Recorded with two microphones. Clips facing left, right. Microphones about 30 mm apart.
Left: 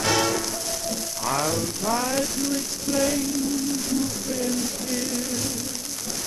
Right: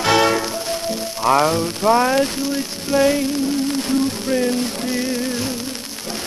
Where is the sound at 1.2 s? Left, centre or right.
Right.